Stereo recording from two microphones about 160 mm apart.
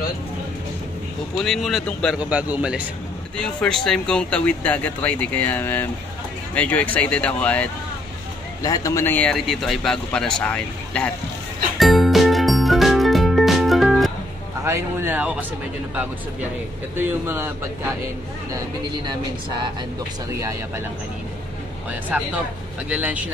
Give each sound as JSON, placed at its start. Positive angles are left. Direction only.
{"t": 1.3, "sound": "speech", "side_deg": 0}
{"t": 2.1, "sound": "speech", "side_deg": -10}
{"t": 3.3, "sound": "speech", "side_deg": 5}
{"t": 8.6, "sound": "speech", "side_deg": 20}
{"t": 11.8, "sound": "music", "side_deg": 0}
{"t": 14.6, "sound": "speech", "side_deg": -15}
{"t": 16.9, "sound": "speech", "side_deg": -15}
{"t": 20.3, "sound": "speech", "side_deg": -20}
{"t": 22.8, "sound": "speech", "side_deg": -10}